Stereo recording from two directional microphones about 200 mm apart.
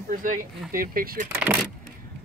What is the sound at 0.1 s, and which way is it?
Speech, 40° right (ahead or behind).